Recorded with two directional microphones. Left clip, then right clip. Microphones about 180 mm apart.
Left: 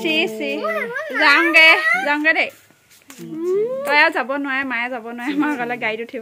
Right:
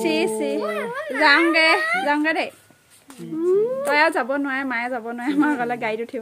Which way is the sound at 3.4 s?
25° right (ahead or behind).